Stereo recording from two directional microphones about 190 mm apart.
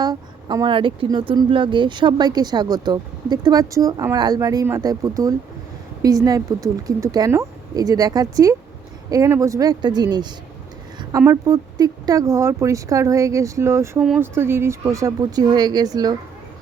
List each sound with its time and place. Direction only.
0.0 s speech: 20° right (ahead or behind)